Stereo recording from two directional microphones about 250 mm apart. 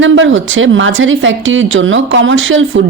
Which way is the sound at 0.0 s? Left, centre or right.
Right.